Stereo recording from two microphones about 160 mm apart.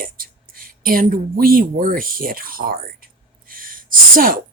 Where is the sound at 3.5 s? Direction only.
60° right (ahead or behind).